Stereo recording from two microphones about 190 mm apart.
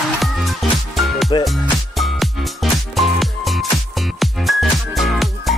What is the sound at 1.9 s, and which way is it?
Music, centre (ahead or behind).